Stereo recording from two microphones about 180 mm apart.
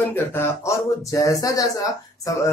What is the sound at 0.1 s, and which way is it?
Speech, 15° left (ahead or behind).